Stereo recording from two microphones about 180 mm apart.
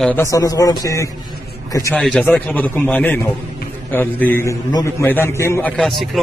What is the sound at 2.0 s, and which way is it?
A man's voice, 5° left (ahead or behind).